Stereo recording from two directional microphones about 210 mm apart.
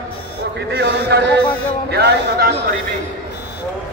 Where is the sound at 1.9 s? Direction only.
50° right (ahead or behind).